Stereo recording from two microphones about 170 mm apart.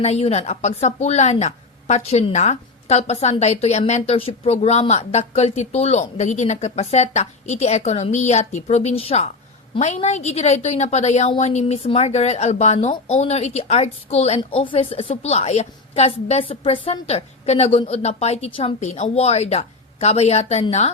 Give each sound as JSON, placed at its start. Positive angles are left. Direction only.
{"t": 0.0, "sound": "a woman's voice", "side_deg": 40}